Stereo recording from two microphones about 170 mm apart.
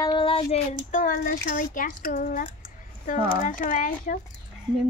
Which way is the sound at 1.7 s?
55° left (ahead or behind).